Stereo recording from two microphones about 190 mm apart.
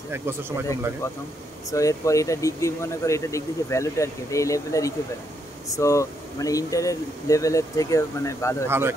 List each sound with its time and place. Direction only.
0.1 s speech: 10° right (ahead or behind)
1.7 s speech: 15° left (ahead or behind)
8.6 s speech: 10° right (ahead or behind)